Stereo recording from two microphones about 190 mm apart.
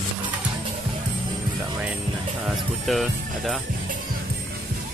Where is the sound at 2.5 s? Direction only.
Centre (ahead or behind).